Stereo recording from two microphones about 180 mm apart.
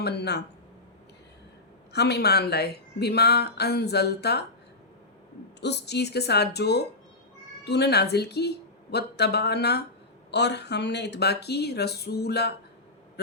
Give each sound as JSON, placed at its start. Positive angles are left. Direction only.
{"t": 0.0, "sound": "speech", "side_deg": 65}
{"t": 1.9, "sound": "speech", "side_deg": 65}
{"t": 5.5, "sound": "speech", "side_deg": 70}
{"t": 13.2, "sound": "a sound", "side_deg": 65}